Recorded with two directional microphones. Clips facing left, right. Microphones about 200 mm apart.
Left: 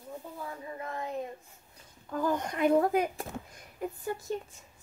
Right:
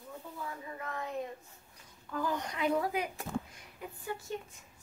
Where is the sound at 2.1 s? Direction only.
50° left (ahead or behind).